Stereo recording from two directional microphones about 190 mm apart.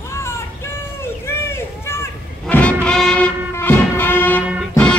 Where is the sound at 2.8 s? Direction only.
5° left (ahead or behind).